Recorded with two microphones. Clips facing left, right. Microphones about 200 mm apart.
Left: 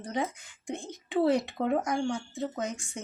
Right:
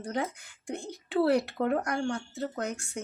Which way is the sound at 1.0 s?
75° right (ahead or behind).